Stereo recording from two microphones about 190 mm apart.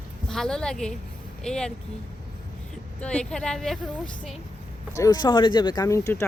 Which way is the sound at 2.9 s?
5° left (ahead or behind).